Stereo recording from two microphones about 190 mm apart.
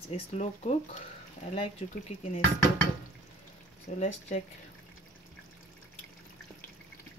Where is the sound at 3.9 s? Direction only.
40° left (ahead or behind).